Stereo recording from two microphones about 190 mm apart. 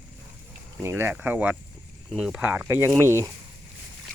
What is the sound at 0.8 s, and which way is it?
Speech, 10° right (ahead or behind).